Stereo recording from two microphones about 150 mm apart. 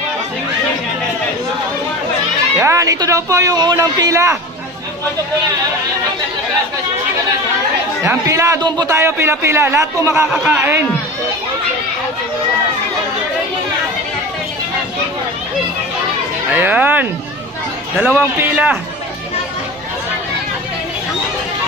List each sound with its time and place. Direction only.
2.6 s a man's voice: 20° right (ahead or behind)
8.0 s a man's voice: 20° right (ahead or behind)
10.3 s a man's voice: 5° right (ahead or behind)
16.5 s a man's voice: 15° right (ahead or behind)